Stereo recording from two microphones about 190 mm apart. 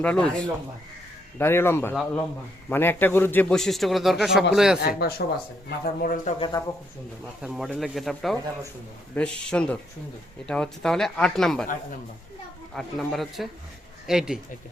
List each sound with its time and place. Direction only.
0.0 s a man's voice: 5° left (ahead or behind)
1.4 s a man's voice: 10° left (ahead or behind)
4.8 s speech: 55° left (ahead or behind)
6.5 s speech: 20° left (ahead or behind)
7.4 s a man's voice: centre (ahead or behind)
12.7 s a man's voice: centre (ahead or behind)